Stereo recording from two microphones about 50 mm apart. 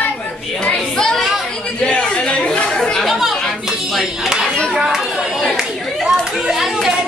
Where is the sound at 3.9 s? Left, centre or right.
Centre.